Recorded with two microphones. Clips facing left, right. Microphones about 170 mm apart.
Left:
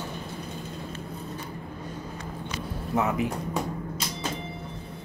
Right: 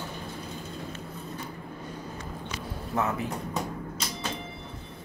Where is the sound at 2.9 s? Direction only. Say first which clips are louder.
Left 3 dB; 20° left (ahead or behind).